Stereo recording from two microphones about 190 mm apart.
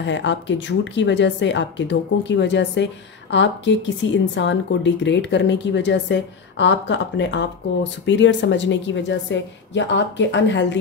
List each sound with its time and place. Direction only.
0.0 s a woman's voice: 70° left (ahead or behind)